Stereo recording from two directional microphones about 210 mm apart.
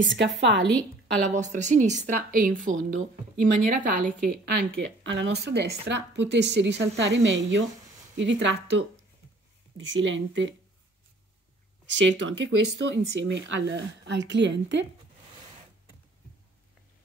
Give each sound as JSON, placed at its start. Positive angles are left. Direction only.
{"t": 0.0, "sound": "speech", "side_deg": -60}
{"t": 1.3, "sound": "speech", "side_deg": -35}
{"t": 5.0, "sound": "speech", "side_deg": -60}
{"t": 11.8, "sound": "speech", "side_deg": -60}